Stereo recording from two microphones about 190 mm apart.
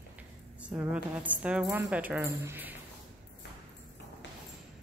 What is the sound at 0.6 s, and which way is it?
A woman's voice, 5° right (ahead or behind).